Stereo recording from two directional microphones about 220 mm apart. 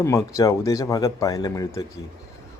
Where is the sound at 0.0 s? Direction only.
15° left (ahead or behind).